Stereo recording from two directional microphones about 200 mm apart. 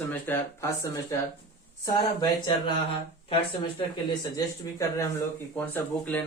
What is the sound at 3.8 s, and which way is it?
Speech, 20° left (ahead or behind).